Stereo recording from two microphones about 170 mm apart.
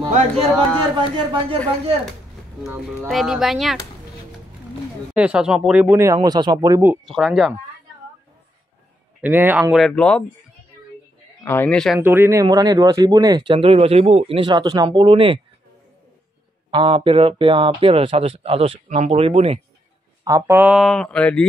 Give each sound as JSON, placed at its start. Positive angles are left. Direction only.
{"t": 0.9, "sound": "speech", "side_deg": -30}
{"t": 2.6, "sound": "speech", "side_deg": -10}
{"t": 5.1, "sound": "speech", "side_deg": -5}
{"t": 7.1, "sound": "speech", "side_deg": 0}
{"t": 9.2, "sound": "speech", "side_deg": -10}
{"t": 11.4, "sound": "a man's voice", "side_deg": 10}
{"t": 12.0, "sound": "speech", "side_deg": -15}
{"t": 16.7, "sound": "speech", "side_deg": -30}
{"t": 20.2, "sound": "speech", "side_deg": -20}
{"t": 20.5, "sound": "speech", "side_deg": -5}